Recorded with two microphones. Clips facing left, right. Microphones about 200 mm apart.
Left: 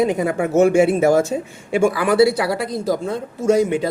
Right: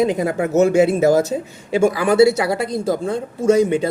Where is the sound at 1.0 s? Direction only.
35° right (ahead or behind).